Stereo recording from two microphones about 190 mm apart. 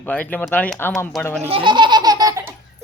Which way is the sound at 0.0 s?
10° left (ahead or behind).